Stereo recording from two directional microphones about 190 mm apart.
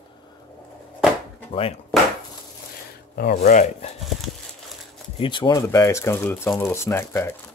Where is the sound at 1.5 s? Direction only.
30° left (ahead or behind).